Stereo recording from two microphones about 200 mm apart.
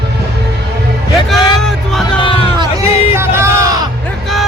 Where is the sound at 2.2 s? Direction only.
25° left (ahead or behind).